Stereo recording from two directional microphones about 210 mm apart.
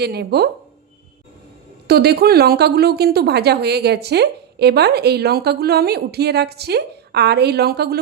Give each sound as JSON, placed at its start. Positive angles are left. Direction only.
{"t": 0.0, "sound": "a woman's voice", "side_deg": -50}
{"t": 1.9, "sound": "a woman's voice", "side_deg": -50}